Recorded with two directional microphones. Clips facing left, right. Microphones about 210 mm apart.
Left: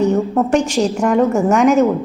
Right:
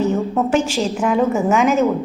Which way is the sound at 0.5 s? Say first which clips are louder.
Left 3 dB; centre (ahead or behind).